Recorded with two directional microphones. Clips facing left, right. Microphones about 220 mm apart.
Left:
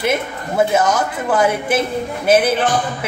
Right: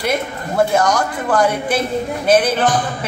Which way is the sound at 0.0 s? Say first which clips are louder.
Left 1 dB; 5° left (ahead or behind).